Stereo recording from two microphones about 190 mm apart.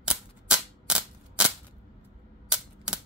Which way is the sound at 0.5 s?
5° right (ahead or behind).